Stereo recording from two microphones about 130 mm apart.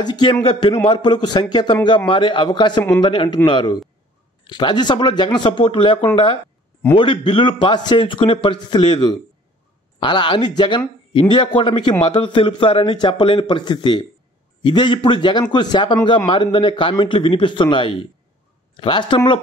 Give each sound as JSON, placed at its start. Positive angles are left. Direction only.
{"t": 0.0, "sound": "speech", "side_deg": 35}